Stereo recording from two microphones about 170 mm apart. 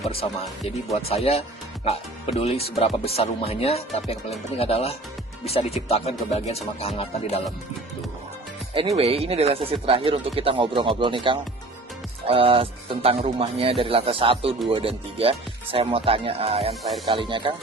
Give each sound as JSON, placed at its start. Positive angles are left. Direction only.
{"t": 0.1, "sound": "speech", "side_deg": 35}
{"t": 8.7, "sound": "speech", "side_deg": -35}